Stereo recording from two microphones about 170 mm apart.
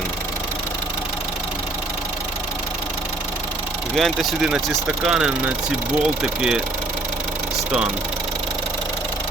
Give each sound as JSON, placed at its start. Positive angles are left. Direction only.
{"t": 3.9, "sound": "speech", "side_deg": 0}